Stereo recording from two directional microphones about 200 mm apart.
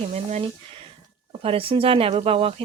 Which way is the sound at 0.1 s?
35° right (ahead or behind).